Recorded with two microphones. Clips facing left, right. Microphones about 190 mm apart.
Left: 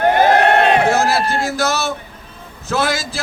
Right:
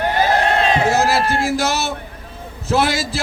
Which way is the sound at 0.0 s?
55° left (ahead or behind).